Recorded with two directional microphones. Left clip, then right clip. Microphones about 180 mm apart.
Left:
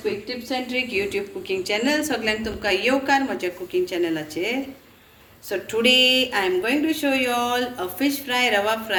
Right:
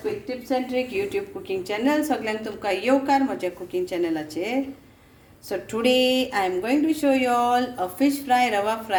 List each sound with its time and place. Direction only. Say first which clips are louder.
0.0 s a woman's voice: left 2 dB; 60° right (ahead or behind)